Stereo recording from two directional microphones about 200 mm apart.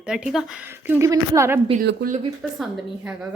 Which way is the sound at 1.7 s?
45° right (ahead or behind).